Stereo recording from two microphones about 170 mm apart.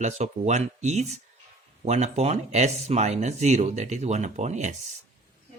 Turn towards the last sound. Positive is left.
turn(degrees=-45)  # may be behind; listen again after turning